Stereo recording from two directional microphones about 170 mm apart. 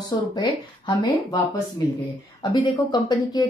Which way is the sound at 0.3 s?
25° left (ahead or behind).